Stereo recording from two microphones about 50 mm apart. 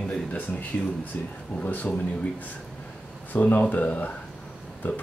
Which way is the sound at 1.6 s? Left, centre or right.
Left.